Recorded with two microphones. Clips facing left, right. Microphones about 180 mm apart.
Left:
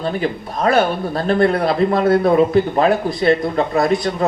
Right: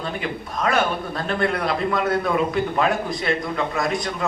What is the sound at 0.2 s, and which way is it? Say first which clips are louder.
A man's voice: left 6 dB; 35° left (ahead or behind).